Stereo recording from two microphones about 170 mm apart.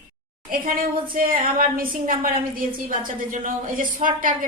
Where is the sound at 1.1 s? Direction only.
55° right (ahead or behind).